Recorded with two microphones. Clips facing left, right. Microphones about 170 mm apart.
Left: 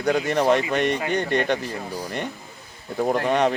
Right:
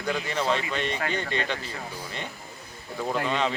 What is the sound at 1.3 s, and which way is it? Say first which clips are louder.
Speech: left 8 dB; 60° left (ahead or behind).